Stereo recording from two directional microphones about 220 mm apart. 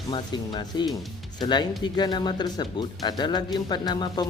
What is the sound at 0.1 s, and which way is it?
Speech, 20° left (ahead or behind).